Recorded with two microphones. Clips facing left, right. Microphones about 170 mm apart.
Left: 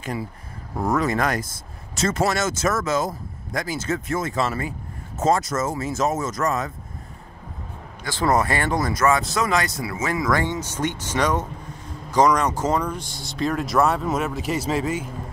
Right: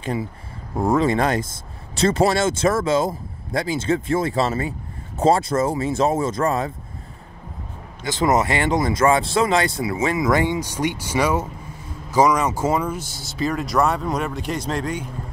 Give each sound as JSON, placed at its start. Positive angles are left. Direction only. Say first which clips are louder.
{"t": 0.0, "sound": "speech", "louder": "right 4 dB", "side_deg": -30}
{"t": 8.0, "sound": "speech", "louder": "right 2 dB", "side_deg": -20}